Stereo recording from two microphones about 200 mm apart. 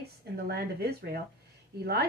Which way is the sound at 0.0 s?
50° right (ahead or behind).